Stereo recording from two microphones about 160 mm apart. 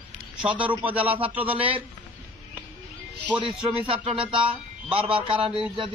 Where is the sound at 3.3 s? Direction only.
30° right (ahead or behind).